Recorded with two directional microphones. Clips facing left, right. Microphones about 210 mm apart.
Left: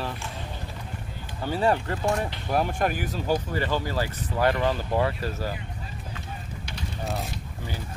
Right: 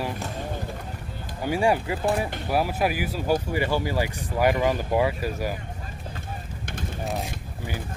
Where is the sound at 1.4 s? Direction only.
10° right (ahead or behind).